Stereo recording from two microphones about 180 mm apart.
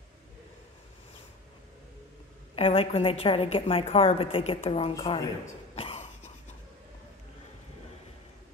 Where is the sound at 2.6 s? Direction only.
30° left (ahead or behind).